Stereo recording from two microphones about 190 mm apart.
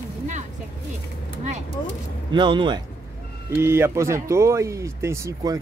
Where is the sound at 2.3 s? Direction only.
25° right (ahead or behind).